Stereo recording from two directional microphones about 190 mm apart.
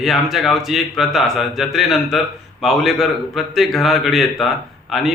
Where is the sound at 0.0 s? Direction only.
Centre (ahead or behind).